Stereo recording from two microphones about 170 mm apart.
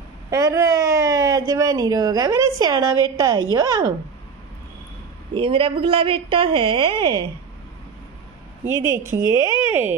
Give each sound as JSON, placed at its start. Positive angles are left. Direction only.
{"t": 0.3, "sound": "a woman's voice", "side_deg": -20}
{"t": 5.3, "sound": "a woman's voice", "side_deg": -30}
{"t": 8.6, "sound": "a woman's voice", "side_deg": -15}